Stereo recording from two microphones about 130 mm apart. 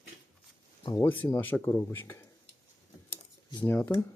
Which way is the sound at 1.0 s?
15° left (ahead or behind).